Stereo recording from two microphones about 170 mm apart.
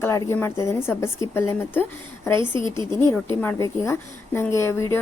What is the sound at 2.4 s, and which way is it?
Speech, 25° right (ahead or behind).